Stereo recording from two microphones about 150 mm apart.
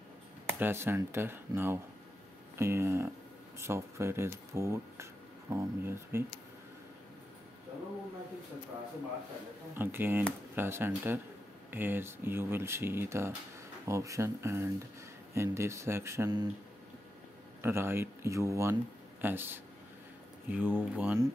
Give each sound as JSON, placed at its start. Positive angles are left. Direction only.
{"t": 0.6, "sound": "speech", "side_deg": -15}
{"t": 9.8, "sound": "speech", "side_deg": -15}
{"t": 17.6, "sound": "speech", "side_deg": -15}